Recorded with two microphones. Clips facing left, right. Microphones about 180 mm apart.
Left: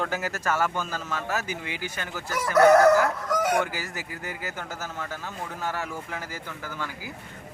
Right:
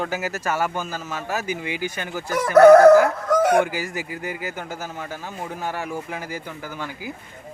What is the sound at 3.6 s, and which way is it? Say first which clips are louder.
Speech: right 6 dB; 15° right (ahead or behind).